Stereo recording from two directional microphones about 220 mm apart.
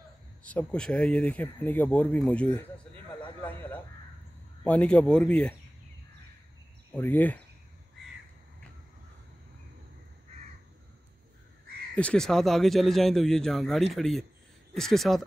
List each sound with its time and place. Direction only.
0.4 s speech: 5° left (ahead or behind)
4.6 s speech: 5° left (ahead or behind)
7.0 s speech: 10° left (ahead or behind)
11.9 s speech: 5° left (ahead or behind)